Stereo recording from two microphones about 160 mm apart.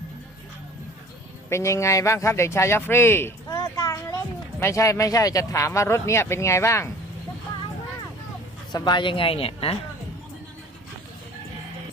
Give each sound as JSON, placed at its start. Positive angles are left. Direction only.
{"t": 1.5, "sound": "speech", "side_deg": 15}
{"t": 8.7, "sound": "speech", "side_deg": 30}